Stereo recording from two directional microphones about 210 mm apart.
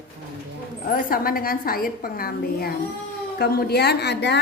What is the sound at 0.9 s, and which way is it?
A woman's voice, 45° left (ahead or behind).